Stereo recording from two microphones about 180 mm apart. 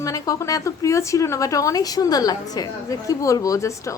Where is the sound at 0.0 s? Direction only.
20° left (ahead or behind).